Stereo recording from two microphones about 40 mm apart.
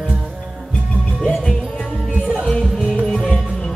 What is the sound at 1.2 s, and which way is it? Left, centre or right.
Music, centre.